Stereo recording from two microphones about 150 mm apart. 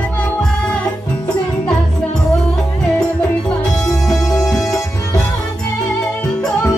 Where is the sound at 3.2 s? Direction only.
5° left (ahead or behind).